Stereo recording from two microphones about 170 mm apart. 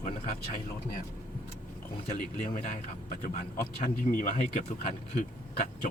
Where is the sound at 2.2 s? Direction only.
50° left (ahead or behind).